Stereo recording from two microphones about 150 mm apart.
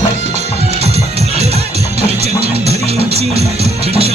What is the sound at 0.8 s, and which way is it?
Music, 45° right (ahead or behind).